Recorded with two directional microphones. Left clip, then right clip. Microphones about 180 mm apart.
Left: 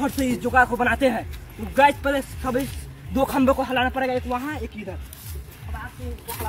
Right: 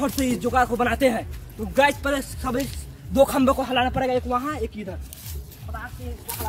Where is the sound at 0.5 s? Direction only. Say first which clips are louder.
Left 3 dB; 30° right (ahead or behind).